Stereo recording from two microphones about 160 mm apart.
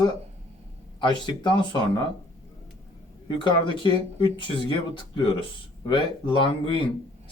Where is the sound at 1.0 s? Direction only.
30° left (ahead or behind).